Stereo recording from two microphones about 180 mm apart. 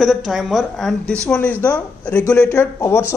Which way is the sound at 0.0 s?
Centre (ahead or behind).